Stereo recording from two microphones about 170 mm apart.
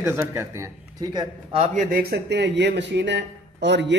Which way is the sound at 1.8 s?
60° right (ahead or behind).